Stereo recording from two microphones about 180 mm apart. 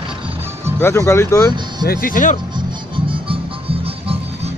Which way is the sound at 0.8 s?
15° left (ahead or behind).